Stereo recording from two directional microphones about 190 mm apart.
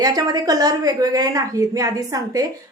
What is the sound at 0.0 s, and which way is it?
A woman's voice, 20° right (ahead or behind).